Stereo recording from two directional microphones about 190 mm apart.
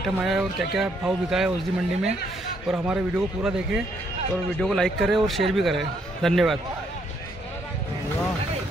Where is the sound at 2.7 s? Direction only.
5° right (ahead or behind).